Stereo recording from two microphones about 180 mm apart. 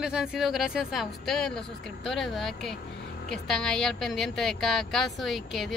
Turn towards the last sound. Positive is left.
turn(degrees=0)  # may be behind; listen again after turning